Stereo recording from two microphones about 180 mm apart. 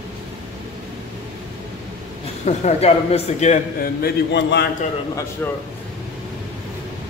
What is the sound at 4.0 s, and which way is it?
Speech, 65° left (ahead or behind).